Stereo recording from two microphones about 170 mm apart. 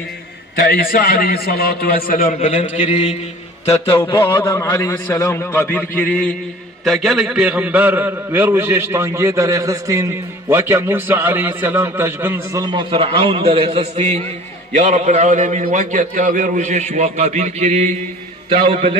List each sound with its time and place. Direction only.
0.6 s a man's voice: 60° left (ahead or behind)
2.4 s a man's voice: 35° left (ahead or behind)
4.0 s a man's voice: 25° left (ahead or behind); by 12.6 s 15° right (ahead or behind)
12.6 s a man's voice: 30° right (ahead or behind)